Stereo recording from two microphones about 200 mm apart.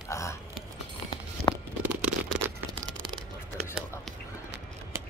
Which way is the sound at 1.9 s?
10° right (ahead or behind).